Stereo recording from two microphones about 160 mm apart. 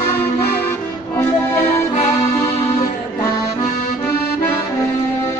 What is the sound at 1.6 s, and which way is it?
Music, 40° left (ahead or behind).